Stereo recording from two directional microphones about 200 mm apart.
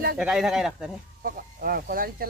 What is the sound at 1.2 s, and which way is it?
Speech, 45° right (ahead or behind).